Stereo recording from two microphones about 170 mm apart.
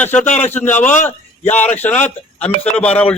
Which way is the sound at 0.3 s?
40° left (ahead or behind).